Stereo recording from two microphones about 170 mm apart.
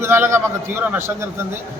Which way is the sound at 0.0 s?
15° right (ahead or behind).